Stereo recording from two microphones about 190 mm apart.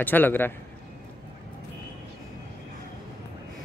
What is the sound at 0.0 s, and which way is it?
Speech, 10° left (ahead or behind).